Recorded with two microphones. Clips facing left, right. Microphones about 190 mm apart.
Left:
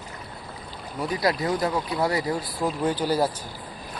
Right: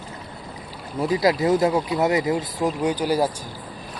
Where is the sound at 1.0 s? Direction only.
25° right (ahead or behind).